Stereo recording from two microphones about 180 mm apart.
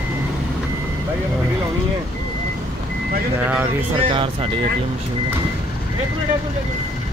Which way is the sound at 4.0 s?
30° right (ahead or behind).